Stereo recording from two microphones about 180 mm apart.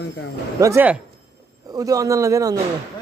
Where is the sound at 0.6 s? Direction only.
15° right (ahead or behind).